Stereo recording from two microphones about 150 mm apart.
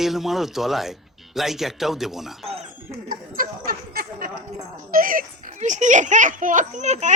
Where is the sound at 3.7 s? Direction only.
85° right.